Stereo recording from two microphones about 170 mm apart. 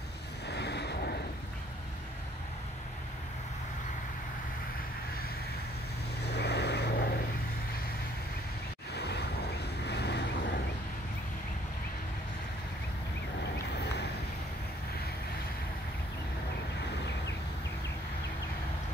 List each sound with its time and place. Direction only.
0.5 s a sound: 80° left
6.2 s vehicle: 75° left (ahead or behind)
8.9 s vehicle: 75° left (ahead or behind)